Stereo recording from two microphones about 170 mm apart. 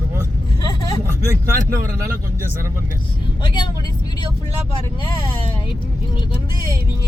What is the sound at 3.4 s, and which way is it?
Speech, 25° left (ahead or behind).